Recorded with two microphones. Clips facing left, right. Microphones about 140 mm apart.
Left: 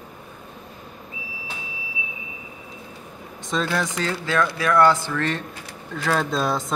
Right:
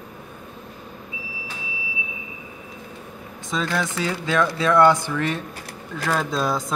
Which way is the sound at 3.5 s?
Centre (ahead or behind).